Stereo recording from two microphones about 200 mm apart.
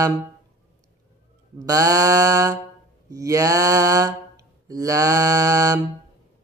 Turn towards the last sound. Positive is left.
turn(degrees=-15)  # may be behind; listen again after turning